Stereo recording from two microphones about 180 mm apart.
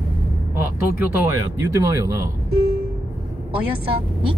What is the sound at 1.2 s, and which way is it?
Speech, 15° right (ahead or behind).